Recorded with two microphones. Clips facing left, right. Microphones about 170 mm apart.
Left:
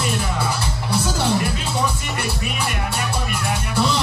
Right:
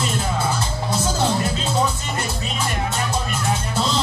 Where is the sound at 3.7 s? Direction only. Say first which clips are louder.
Left 4 dB; 65° left (ahead or behind).